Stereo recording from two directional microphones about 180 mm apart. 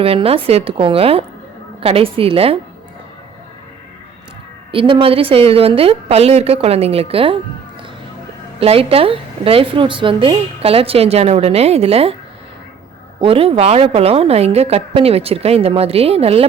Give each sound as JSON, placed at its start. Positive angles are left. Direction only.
{"t": 0.0, "sound": "a woman's voice", "side_deg": -30}
{"t": 4.7, "sound": "a woman's voice", "side_deg": -30}
{"t": 8.6, "sound": "a woman's voice", "side_deg": -30}
{"t": 13.1, "sound": "a woman's voice", "side_deg": -30}